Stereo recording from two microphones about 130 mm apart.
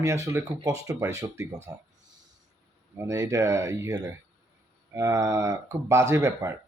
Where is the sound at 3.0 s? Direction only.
25° right (ahead or behind).